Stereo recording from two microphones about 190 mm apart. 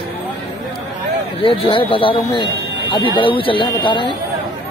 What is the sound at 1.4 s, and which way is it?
A man's voice, 30° left (ahead or behind).